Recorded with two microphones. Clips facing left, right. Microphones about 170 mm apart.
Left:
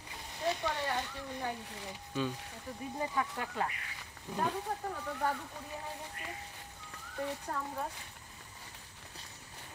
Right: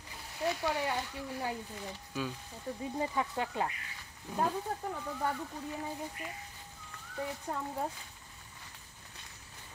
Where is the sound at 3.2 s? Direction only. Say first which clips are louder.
Right 1 dB; 20° right (ahead or behind).